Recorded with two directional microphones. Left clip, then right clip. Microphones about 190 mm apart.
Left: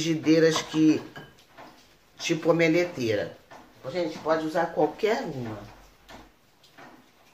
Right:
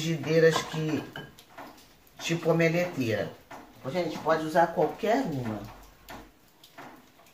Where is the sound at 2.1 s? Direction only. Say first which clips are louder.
Left 3 dB; 55° left (ahead or behind).